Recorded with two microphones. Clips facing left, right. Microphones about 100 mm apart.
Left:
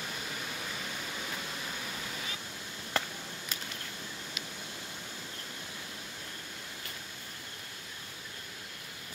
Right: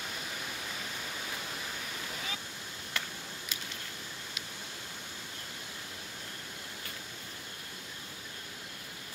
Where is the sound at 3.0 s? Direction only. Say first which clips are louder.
Left 6 dB; 35° left (ahead or behind).